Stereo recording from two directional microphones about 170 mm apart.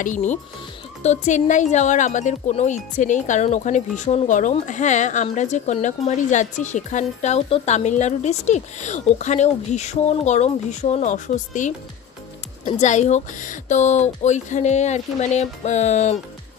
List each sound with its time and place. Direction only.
0.0 s speech: 45° left (ahead or behind)
12.7 s speech: 45° left (ahead or behind)